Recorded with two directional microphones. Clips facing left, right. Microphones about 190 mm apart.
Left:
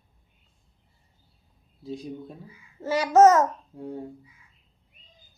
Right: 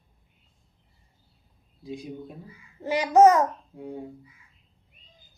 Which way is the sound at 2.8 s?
15° right (ahead or behind).